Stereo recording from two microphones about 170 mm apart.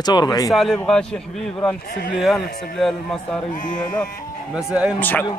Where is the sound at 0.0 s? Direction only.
25° left (ahead or behind).